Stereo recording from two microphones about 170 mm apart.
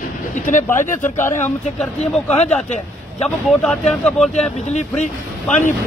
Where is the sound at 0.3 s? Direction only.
45° left (ahead or behind).